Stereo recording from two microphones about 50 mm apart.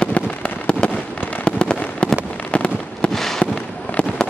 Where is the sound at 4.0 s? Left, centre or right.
Left.